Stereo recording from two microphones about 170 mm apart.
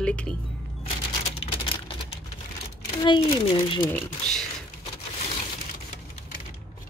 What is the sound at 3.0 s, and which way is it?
Speech, 30° left (ahead or behind).